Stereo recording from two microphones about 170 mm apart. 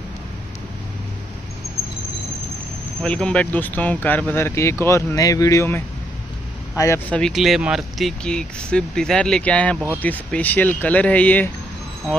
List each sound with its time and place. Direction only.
3.0 s speech: 5° left (ahead or behind)
7.2 s speech: centre (ahead or behind)